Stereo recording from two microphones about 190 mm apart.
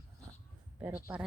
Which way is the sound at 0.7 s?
10° right (ahead or behind).